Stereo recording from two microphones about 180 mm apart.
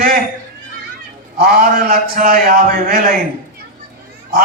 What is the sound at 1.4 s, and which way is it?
A man's voice, 60° right (ahead or behind).